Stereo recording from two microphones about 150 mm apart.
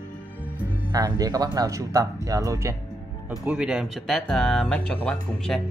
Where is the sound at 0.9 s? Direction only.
25° right (ahead or behind).